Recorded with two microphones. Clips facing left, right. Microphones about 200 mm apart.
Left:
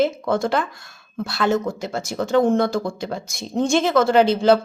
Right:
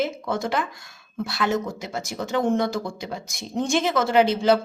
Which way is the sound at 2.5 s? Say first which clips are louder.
Left 4 dB; 15° right (ahead or behind).